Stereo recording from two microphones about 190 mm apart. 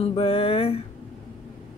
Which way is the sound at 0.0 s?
30° left (ahead or behind).